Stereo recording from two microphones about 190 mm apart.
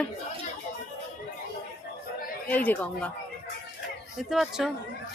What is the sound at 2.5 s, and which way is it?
Speech, 10° left (ahead or behind).